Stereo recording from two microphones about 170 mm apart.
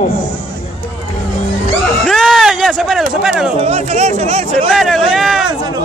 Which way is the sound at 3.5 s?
35° right (ahead or behind).